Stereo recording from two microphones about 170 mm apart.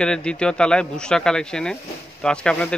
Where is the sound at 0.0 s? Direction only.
5° left (ahead or behind).